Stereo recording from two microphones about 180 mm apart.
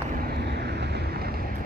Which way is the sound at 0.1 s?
60° right (ahead or behind).